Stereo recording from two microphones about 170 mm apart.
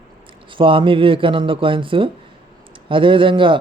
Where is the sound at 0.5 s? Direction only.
30° right (ahead or behind).